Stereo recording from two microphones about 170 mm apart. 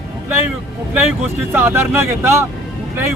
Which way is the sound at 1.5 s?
15° right (ahead or behind).